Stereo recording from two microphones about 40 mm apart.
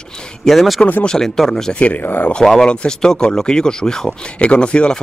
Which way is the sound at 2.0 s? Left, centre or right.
Left.